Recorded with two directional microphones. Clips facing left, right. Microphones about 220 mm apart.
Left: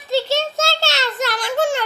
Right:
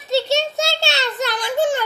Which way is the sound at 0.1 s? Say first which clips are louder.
Right 1 dB; 20° right (ahead or behind).